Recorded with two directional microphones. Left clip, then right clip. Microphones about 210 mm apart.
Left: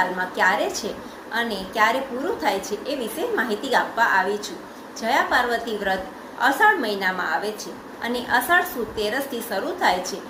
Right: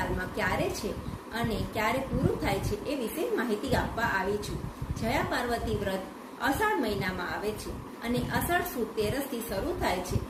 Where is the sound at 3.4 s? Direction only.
10° right (ahead or behind).